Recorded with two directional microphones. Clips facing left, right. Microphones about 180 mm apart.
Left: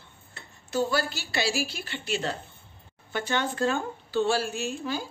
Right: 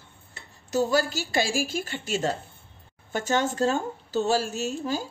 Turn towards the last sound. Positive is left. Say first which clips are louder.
# right 2 dB
turn(degrees=-40)  # may be behind; listen again after turning